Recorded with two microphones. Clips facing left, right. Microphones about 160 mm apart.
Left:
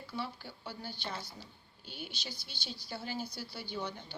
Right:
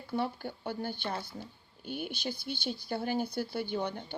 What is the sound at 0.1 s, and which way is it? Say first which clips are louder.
Speech: right 8 dB; 55° right (ahead or behind).